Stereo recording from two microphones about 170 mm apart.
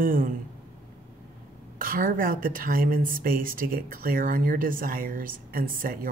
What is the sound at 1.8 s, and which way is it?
A woman's voice, 55° right (ahead or behind).